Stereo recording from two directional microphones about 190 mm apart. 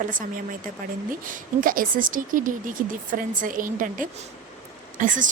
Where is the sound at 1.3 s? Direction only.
45° right (ahead or behind).